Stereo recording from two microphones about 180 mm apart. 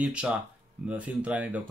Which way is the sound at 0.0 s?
5° right (ahead or behind).